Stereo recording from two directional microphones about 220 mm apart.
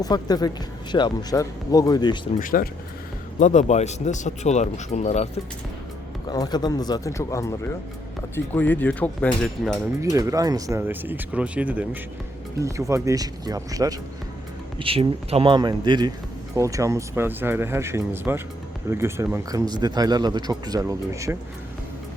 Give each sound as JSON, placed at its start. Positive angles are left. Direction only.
{"t": 0.0, "sound": "speech", "side_deg": 15}
{"t": 2.4, "sound": "speech", "side_deg": 40}
{"t": 6.2, "sound": "speech", "side_deg": 20}
{"t": 10.0, "sound": "a man's voice", "side_deg": -15}